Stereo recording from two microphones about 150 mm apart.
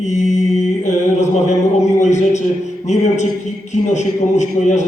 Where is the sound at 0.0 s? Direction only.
50° left (ahead or behind).